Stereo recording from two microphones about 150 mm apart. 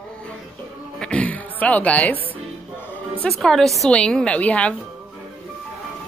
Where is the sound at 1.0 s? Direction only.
10° left (ahead or behind).